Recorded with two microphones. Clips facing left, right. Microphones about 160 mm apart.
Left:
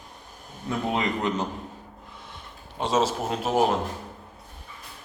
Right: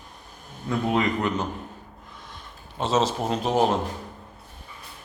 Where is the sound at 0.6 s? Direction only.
20° left (ahead or behind).